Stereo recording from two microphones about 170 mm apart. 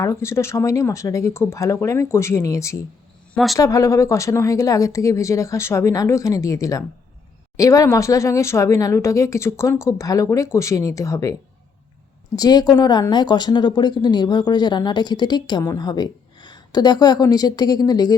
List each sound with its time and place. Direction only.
0.0 s speech: 15° left (ahead or behind)
3.3 s speech: centre (ahead or behind)
3.6 s speech: 20° left (ahead or behind)
12.4 s speech: 25° left (ahead or behind)